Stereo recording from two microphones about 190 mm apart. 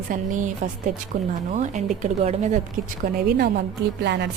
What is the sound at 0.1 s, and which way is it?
Speech, 40° right (ahead or behind).